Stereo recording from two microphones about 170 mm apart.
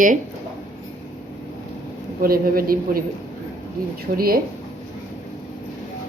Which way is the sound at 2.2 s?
60° right (ahead or behind).